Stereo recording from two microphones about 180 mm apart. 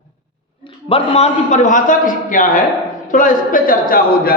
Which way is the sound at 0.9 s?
35° left (ahead or behind).